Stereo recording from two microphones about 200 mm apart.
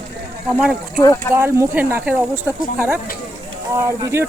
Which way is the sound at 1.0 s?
15° left (ahead or behind).